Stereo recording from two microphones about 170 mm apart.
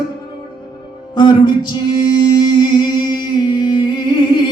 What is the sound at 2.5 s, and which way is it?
Humming, 25° left (ahead or behind).